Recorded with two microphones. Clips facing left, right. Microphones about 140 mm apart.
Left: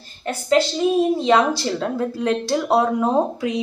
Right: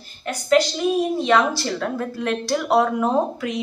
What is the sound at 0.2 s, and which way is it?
A woman's voice, 30° left (ahead or behind).